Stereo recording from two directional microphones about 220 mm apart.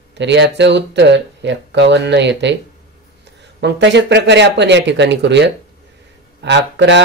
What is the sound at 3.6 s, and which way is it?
Speech, 50° right (ahead or behind).